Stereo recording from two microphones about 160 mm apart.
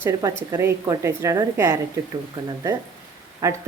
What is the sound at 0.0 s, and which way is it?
Speech, 20° right (ahead or behind).